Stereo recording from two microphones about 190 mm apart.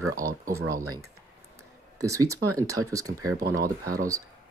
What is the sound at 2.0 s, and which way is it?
Speech, 15° right (ahead or behind).